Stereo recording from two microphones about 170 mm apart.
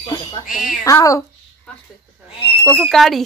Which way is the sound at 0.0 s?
25° left (ahead or behind).